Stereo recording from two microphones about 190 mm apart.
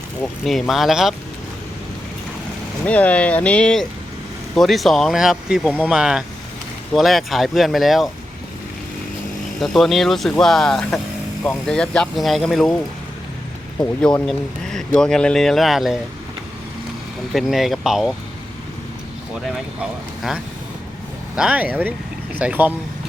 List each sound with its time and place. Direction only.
0.2 s speech: 5° left (ahead or behind)
2.8 s speech: 5° left (ahead or behind)
9.6 s speech: centre (ahead or behind)
14.0 s speech: 5° left (ahead or behind)
17.3 s speech: centre (ahead or behind)
21.3 s speech: 5° right (ahead or behind)